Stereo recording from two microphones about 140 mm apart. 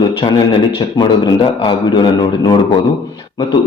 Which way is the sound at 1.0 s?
35° left (ahead or behind).